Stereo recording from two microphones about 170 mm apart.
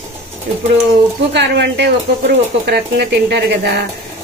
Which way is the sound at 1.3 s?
90° right.